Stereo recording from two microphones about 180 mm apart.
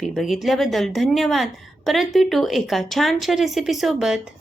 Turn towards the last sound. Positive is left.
turn(degrees=0)  # may be behind; listen again after turning